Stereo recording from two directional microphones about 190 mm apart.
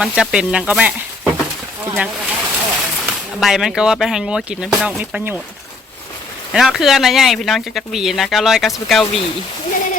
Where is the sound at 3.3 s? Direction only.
Centre (ahead or behind).